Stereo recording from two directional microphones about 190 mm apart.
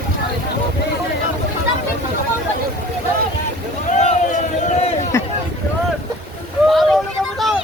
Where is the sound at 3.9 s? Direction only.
40° left (ahead or behind).